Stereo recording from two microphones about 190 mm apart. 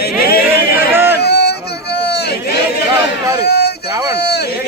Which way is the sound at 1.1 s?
60° left (ahead or behind).